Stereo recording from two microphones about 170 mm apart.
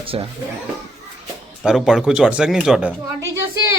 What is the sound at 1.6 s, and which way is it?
Speech, 5° right (ahead or behind).